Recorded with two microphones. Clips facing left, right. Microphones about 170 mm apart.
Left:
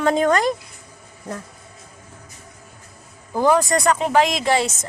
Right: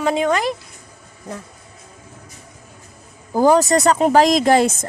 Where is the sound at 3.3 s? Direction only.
30° right (ahead or behind).